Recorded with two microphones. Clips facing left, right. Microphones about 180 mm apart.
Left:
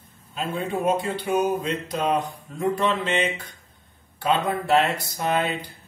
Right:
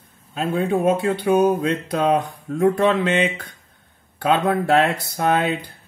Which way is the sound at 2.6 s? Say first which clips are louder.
Right 6 dB; 60° right (ahead or behind).